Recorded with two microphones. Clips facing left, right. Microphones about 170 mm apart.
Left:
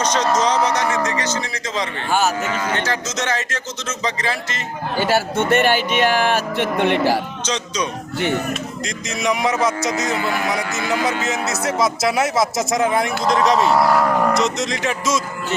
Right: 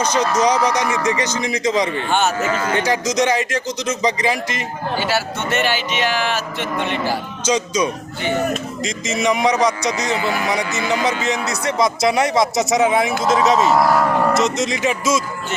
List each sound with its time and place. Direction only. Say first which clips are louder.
0.0 s a man's voice: right 1 dB; 10° right (ahead or behind)
2.0 s a man's voice: right 1 dB; centre (ahead or behind)
2.7 s a man's voice: right 5 dB; 15° right (ahead or behind)
4.9 s speech: left 4 dB; 50° left (ahead or behind)
7.4 s a man's voice: right 5 dB; 10° right (ahead or behind)
10.2 s speech: right 1 dB; 55° left (ahead or behind)
10.7 s a man's voice: right 1 dB; centre (ahead or behind)